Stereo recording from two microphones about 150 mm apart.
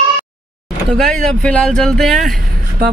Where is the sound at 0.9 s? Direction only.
5° left (ahead or behind).